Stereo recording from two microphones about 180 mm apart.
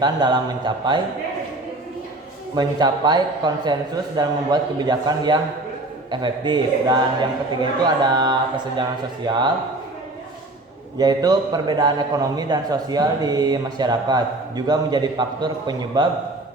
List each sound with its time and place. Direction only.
0.0 s a man's voice: 25° right (ahead or behind)
2.6 s a man's voice: 25° right (ahead or behind)
10.9 s a man's voice: 20° right (ahead or behind)